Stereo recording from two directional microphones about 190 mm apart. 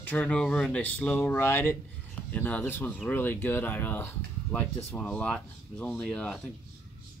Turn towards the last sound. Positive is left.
turn(degrees=0)  # may be behind; listen again after turning